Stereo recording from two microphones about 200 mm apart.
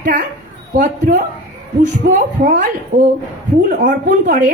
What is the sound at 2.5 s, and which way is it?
A woman's voice, 40° right (ahead or behind).